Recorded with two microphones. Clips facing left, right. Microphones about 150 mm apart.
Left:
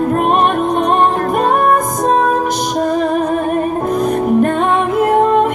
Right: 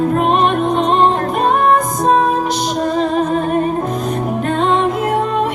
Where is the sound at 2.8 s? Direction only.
50° left (ahead or behind).